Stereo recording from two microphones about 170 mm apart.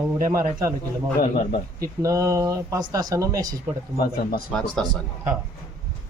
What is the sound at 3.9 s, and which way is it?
Speech, 60° left (ahead or behind).